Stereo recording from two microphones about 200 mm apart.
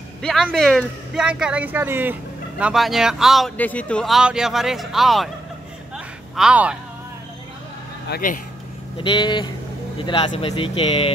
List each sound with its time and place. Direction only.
0.2 s speech: centre (ahead or behind)
5.9 s a sound: 5° right (ahead or behind)
8.1 s speech: 45° left (ahead or behind)
8.9 s speech: 25° left (ahead or behind)